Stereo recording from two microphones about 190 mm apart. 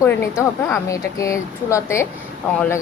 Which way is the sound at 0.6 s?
15° left (ahead or behind).